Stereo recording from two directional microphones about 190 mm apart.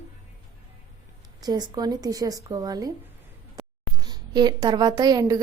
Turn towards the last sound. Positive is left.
turn(degrees=-20)  # may be behind; listen again after turning